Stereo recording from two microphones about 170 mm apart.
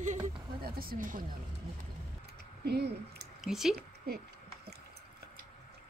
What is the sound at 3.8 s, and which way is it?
Speech, 65° right (ahead or behind).